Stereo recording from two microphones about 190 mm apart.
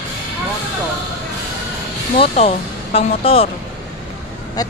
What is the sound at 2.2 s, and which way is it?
Speech, 30° left (ahead or behind).